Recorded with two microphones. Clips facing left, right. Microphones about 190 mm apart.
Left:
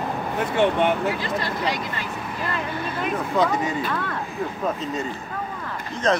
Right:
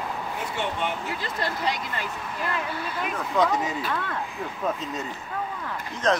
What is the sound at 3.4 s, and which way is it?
Speech, centre (ahead or behind).